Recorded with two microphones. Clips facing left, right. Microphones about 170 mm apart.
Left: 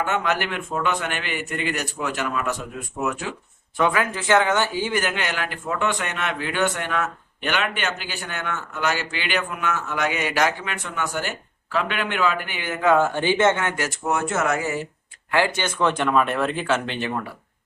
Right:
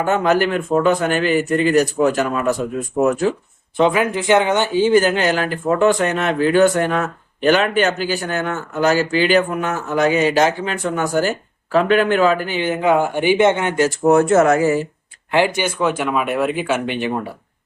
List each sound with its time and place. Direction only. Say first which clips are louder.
0.0 s speech: right 8 dB; 40° right (ahead or behind)
3.8 s speech: right 6 dB; 20° right (ahead or behind)
10.8 s speech: right 10 dB; 40° right (ahead or behind)
14.0 s speech: right 11 dB; 40° right (ahead or behind)
15.3 s speech: right 5 dB; 15° right (ahead or behind)